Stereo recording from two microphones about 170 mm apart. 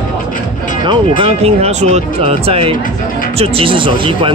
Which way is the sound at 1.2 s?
35° right (ahead or behind).